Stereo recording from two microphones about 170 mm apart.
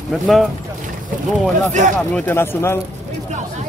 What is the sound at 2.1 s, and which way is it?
Speech, 10° left (ahead or behind).